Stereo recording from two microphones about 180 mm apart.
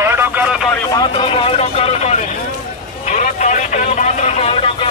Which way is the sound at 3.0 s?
45° left (ahead or behind).